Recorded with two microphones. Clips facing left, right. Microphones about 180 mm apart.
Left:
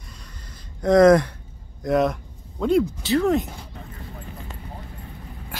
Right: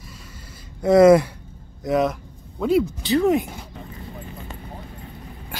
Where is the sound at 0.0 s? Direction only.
5° right (ahead or behind).